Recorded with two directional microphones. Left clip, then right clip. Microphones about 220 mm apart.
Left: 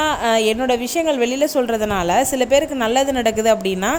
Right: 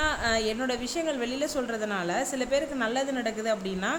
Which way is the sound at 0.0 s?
30° left (ahead or behind).